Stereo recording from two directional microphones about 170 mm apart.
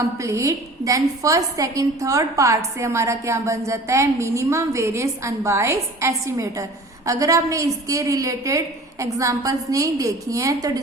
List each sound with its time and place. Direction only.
0.2 s a woman's voice: 20° right (ahead or behind)